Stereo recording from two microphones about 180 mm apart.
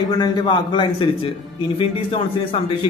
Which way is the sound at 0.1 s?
25° left (ahead or behind).